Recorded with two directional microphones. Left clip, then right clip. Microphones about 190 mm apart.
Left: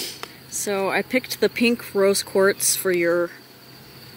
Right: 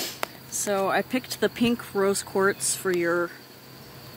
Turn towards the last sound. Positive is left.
turn(degrees=15)  # may be behind; listen again after turning